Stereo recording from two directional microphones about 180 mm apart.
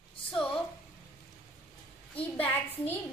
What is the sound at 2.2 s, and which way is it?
Speech, 10° left (ahead or behind).